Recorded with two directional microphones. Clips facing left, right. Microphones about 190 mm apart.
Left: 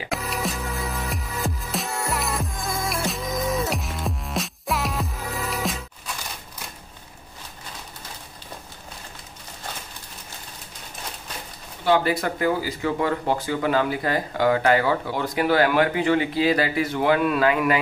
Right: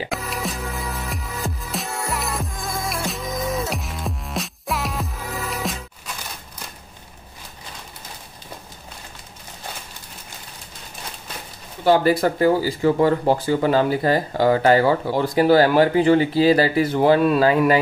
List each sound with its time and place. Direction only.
0.1 s music: centre (ahead or behind)
11.8 s speech: 40° right (ahead or behind)